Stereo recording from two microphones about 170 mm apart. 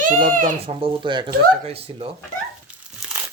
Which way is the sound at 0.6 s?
35° right (ahead or behind).